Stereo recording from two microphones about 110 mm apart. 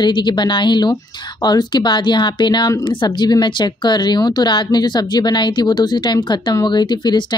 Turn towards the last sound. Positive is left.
turn(degrees=45)  # may be behind; listen again after turning